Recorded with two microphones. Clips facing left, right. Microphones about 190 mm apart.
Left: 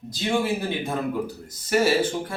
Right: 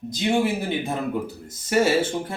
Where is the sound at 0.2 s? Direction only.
20° right (ahead or behind).